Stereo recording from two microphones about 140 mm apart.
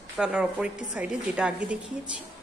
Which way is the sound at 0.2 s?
5° right (ahead or behind).